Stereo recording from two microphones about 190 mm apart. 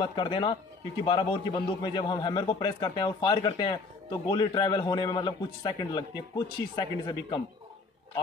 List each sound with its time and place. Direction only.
0.0 s a man's voice: 25° left (ahead or behind)